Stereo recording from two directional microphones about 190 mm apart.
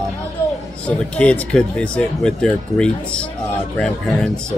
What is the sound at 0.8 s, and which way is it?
Speech, 5° left (ahead or behind).